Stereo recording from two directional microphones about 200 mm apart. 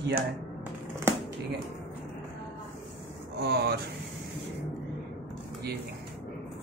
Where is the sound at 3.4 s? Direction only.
55° right (ahead or behind).